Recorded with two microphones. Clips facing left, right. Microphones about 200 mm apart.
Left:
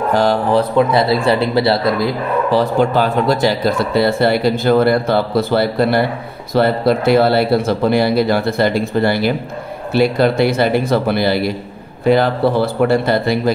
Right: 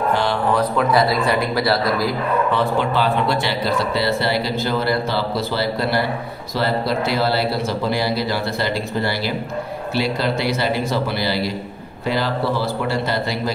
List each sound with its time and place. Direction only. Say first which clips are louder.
0.1 s speech: left 8 dB; 40° left (ahead or behind)
0.6 s speech: left 3 dB; 25° left (ahead or behind)
2.5 s speech: left 5 dB; 40° left (ahead or behind)